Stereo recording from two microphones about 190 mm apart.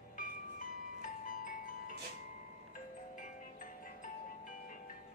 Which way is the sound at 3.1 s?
45° left (ahead or behind).